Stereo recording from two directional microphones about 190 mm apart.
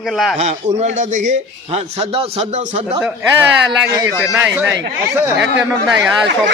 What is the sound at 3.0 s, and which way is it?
A man's voice, 10° right (ahead or behind).